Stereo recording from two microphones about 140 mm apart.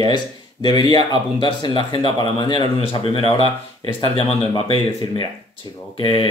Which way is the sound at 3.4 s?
40° right (ahead or behind).